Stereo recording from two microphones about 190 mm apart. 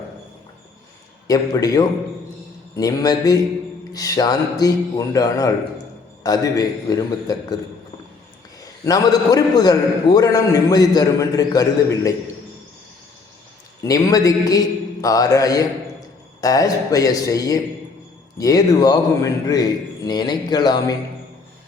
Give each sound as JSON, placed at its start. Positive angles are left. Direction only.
{"t": 1.3, "sound": "a man's voice", "side_deg": 20}
{"t": 8.6, "sound": "a man's voice", "side_deg": 20}
{"t": 13.8, "sound": "a man's voice", "side_deg": 20}